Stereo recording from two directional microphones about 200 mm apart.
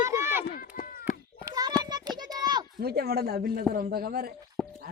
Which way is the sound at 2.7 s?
50° right (ahead or behind).